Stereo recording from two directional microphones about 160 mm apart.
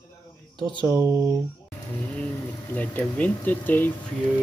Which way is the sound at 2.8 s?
10° left (ahead or behind).